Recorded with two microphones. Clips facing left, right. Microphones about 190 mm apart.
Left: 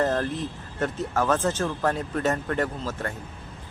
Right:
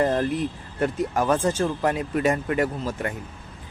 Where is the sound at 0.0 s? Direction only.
10° right (ahead or behind).